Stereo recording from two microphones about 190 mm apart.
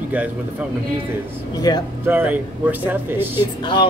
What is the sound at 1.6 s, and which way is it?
Speech, 20° left (ahead or behind).